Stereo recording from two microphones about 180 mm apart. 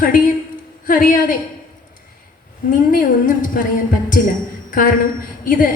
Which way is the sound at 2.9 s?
50° left (ahead or behind).